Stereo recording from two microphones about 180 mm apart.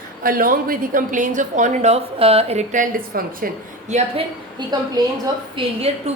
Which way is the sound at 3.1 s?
55° right (ahead or behind).